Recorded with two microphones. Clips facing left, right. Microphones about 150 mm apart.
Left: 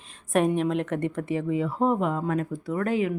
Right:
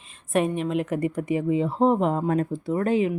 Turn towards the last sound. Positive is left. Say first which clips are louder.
# right 3 dB
turn(degrees=-25)  # may be behind; listen again after turning